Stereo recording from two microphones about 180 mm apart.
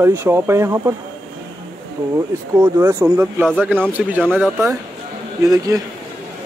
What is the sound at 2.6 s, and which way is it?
Speech, 15° right (ahead or behind).